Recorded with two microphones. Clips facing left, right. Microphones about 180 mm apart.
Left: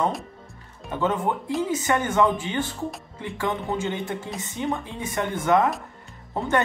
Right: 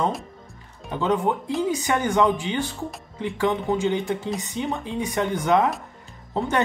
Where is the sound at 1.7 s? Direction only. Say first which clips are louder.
Right 1 dB; 15° right (ahead or behind).